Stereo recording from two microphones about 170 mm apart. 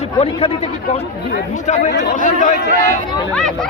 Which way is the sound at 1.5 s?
45° left (ahead or behind).